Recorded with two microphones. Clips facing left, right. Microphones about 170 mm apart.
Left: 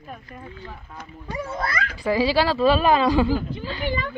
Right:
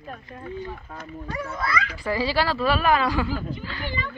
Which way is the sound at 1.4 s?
40° left (ahead or behind).